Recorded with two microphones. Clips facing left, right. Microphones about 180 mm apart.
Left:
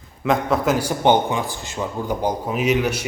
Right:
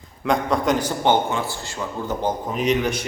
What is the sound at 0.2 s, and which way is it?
A man's voice, 5° left (ahead or behind).